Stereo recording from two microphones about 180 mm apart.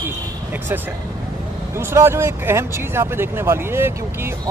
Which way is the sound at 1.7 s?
15° right (ahead or behind).